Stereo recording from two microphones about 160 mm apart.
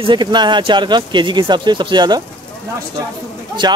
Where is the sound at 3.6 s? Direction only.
25° right (ahead or behind).